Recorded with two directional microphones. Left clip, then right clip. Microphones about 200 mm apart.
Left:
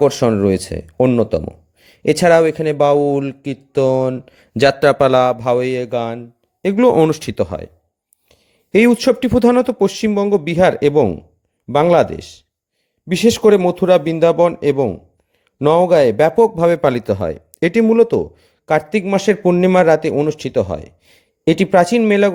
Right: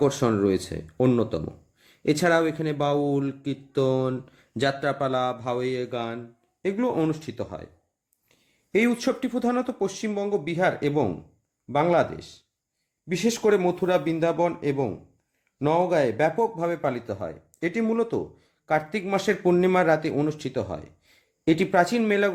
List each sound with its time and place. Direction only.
0.0 s a man's voice: 40° left (ahead or behind)